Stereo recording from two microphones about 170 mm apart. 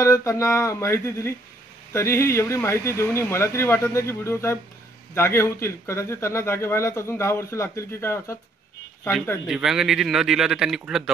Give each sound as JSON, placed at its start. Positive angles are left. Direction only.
{"t": 0.0, "sound": "speech", "side_deg": 15}
{"t": 9.5, "sound": "speech", "side_deg": -5}